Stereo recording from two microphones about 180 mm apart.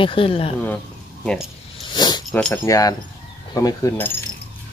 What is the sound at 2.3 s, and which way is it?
A man's voice, 10° left (ahead or behind).